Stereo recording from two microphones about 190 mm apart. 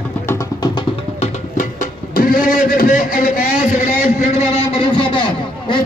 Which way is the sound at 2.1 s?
50° left (ahead or behind).